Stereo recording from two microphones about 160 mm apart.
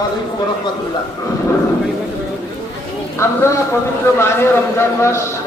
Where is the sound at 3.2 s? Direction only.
15° left (ahead or behind).